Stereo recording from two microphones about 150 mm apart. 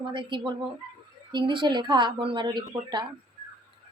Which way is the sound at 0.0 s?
30° right (ahead or behind).